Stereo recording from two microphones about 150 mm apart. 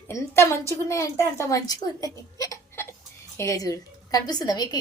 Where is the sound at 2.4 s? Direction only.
20° left (ahead or behind).